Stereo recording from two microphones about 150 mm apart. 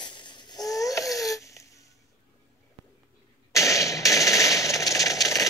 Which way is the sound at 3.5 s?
20° left (ahead or behind).